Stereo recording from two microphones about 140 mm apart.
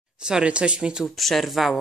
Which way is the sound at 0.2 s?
5° right (ahead or behind).